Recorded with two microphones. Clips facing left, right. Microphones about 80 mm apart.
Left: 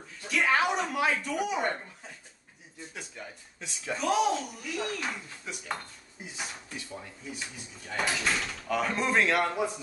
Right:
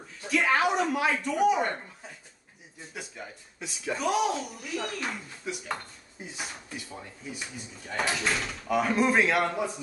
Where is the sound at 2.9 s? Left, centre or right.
Centre.